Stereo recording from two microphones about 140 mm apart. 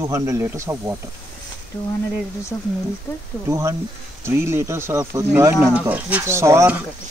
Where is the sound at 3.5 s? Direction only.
20° right (ahead or behind).